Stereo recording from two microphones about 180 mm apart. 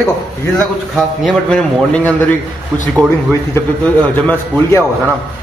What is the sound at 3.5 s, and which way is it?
A man's voice, 10° left (ahead or behind).